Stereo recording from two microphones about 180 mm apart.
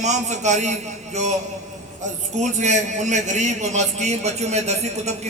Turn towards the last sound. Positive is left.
turn(degrees=-40)  # may be behind; listen again after turning